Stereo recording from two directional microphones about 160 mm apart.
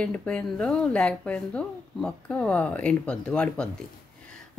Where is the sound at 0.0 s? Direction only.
5° left (ahead or behind).